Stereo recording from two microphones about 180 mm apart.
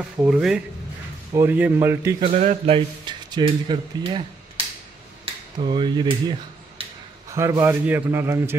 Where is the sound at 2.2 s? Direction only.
40° right (ahead or behind).